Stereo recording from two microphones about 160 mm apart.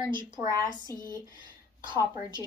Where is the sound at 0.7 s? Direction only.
55° left (ahead or behind).